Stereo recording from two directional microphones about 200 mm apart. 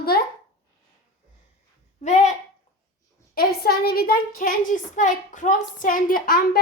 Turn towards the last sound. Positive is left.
turn(degrees=50)  # may be behind; listen again after turning